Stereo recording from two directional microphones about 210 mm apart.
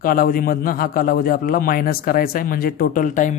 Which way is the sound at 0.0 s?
45° left (ahead or behind).